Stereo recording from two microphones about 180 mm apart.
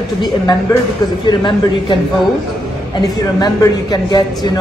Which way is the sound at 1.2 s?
25° left (ahead or behind).